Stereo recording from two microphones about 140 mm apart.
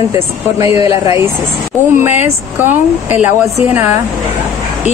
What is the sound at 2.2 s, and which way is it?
A woman's voice, 15° right (ahead or behind).